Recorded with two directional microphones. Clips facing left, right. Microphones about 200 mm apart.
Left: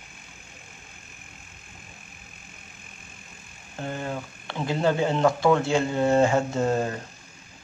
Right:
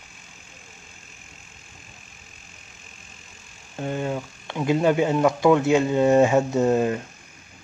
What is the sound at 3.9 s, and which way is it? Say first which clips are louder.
Speech: right 5 dB; 20° right (ahead or behind).